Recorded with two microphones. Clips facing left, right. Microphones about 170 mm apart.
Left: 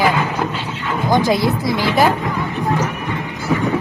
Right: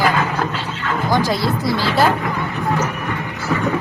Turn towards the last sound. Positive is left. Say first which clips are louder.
# left 1 dB
turn(degrees=15)  # may be behind; listen again after turning